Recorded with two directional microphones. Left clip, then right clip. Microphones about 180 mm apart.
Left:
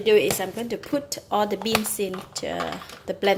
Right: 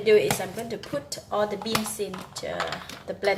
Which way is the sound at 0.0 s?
40° left (ahead or behind).